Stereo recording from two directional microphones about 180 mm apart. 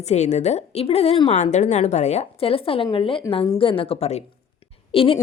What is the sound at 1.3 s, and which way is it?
Speech, 40° left (ahead or behind).